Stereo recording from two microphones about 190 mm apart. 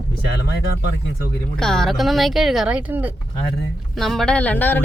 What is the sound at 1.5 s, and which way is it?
Speech, 5° left (ahead or behind).